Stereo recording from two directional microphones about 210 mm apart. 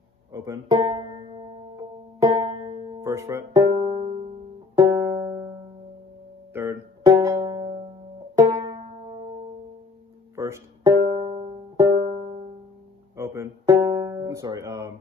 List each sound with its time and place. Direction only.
0.3 s music: 15° right (ahead or behind)
4.7 s music: 15° right (ahead or behind)
6.5 s music: 10° right (ahead or behind)
10.3 s music: 15° right (ahead or behind)
11.0 s music: 25° right (ahead or behind)
13.1 s music: 15° right (ahead or behind)